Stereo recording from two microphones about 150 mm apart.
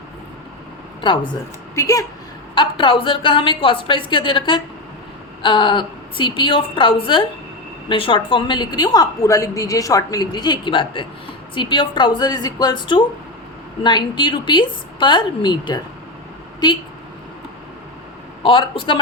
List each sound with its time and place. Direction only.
1.0 s a woman's voice: 35° left (ahead or behind)
1.7 s a woman's voice: 20° left (ahead or behind)
2.6 s a woman's voice: 35° left (ahead or behind)
18.4 s a woman's voice: 35° left (ahead or behind)